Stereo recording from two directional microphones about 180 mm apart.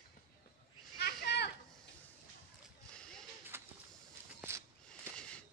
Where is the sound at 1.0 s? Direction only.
65° left (ahead or behind).